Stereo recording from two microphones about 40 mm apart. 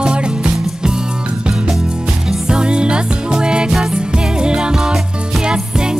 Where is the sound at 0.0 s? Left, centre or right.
Right.